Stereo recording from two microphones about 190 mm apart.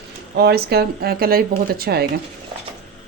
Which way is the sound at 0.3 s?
55° right (ahead or behind).